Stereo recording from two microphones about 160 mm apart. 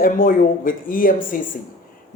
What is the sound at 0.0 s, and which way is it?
A woman's voice, 60° left (ahead or behind).